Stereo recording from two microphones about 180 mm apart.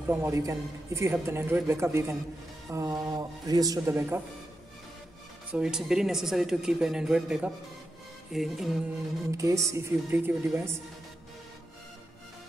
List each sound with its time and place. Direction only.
0.1 s a man's voice: 15° right (ahead or behind)
5.5 s speech: 5° right (ahead or behind)
9.4 s speech: 15° right (ahead or behind)